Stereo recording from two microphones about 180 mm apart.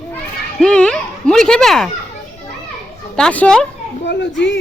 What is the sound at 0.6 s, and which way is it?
Speech, 5° left (ahead or behind).